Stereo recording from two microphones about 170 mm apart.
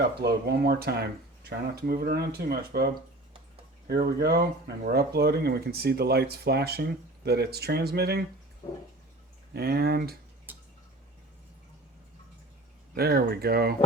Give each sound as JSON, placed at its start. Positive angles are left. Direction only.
{"t": 0.2, "sound": "speech", "side_deg": -65}
{"t": 8.6, "sound": "a sound", "side_deg": 35}
{"t": 9.5, "sound": "speech", "side_deg": -70}
{"t": 12.9, "sound": "speech", "side_deg": -65}